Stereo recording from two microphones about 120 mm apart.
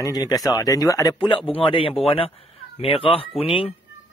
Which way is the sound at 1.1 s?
45° left (ahead or behind).